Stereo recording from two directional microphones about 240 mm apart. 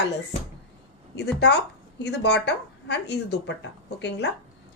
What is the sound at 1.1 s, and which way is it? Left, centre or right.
A woman's voice, left.